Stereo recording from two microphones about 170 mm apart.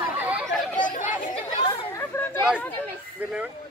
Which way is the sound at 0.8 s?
50° left (ahead or behind).